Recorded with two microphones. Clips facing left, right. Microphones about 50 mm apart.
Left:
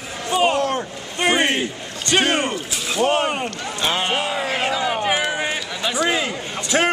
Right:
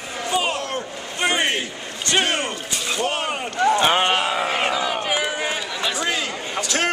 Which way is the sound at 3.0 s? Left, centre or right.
Left.